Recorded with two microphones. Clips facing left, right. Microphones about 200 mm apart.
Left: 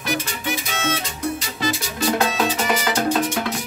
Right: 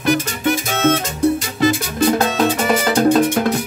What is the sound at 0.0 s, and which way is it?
Music, 55° right (ahead or behind).